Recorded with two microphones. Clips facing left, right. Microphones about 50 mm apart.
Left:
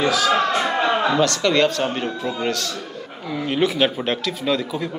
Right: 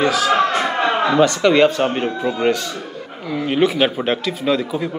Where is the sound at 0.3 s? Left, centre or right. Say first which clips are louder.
Right 2 dB; right.